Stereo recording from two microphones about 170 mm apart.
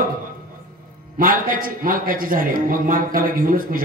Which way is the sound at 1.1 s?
55° right (ahead or behind).